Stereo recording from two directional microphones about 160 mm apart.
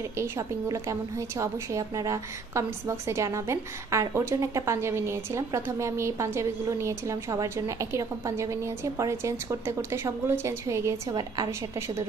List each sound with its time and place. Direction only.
0.2 s a woman's voice: 20° right (ahead or behind)